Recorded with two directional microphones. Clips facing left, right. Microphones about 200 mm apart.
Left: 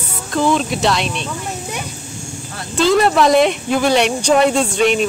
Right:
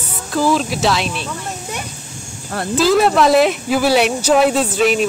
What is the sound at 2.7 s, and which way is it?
Speech, centre (ahead or behind).